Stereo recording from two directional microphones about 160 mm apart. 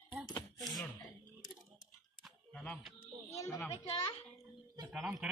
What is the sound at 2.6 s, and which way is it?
Speech, centre (ahead or behind).